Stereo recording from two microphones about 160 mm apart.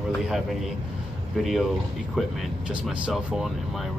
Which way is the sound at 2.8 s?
Centre (ahead or behind).